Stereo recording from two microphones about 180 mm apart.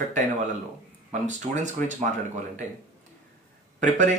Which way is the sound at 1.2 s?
40° right (ahead or behind).